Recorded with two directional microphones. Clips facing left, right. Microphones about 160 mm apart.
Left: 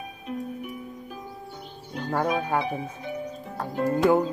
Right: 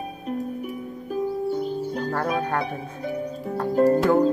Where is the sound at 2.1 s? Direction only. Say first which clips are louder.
Left 2 dB; 5° left (ahead or behind).